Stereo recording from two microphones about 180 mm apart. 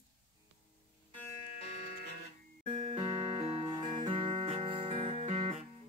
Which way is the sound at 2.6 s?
35° right (ahead or behind).